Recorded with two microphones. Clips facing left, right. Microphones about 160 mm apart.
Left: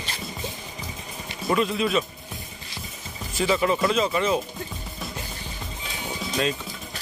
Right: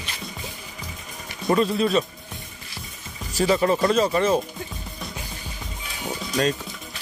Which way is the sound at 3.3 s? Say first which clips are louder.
Right 3 dB; 40° right (ahead or behind).